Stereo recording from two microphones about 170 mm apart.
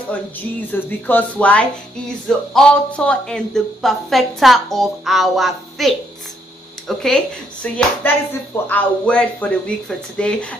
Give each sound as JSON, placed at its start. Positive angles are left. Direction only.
{"t": 0.6, "sound": "speech", "side_deg": 10}